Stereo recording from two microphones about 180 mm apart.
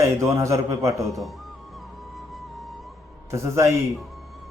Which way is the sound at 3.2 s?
15° right (ahead or behind).